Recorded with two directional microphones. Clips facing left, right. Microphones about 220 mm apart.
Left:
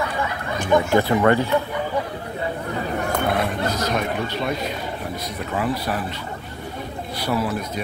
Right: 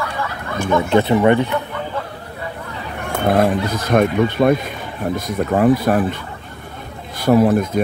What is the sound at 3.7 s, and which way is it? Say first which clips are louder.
Speech: right 7 dB; 55° right (ahead or behind).